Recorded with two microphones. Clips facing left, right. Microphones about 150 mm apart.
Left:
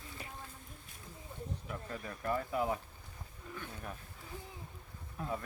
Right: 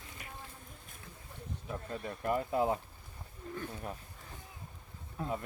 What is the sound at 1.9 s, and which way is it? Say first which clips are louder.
Speech: right 3 dB; 25° right (ahead or behind).